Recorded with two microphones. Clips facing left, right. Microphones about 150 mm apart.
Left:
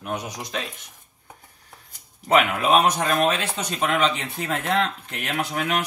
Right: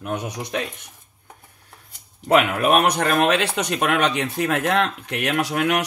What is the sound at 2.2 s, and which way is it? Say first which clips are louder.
Speech: right 2 dB; 60° right (ahead or behind).